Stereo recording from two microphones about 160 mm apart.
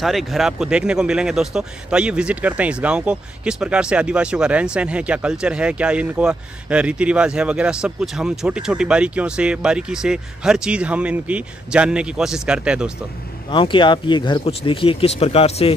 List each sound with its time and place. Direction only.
0.0 s a man's voice: centre (ahead or behind)
13.5 s speech: 30° left (ahead or behind)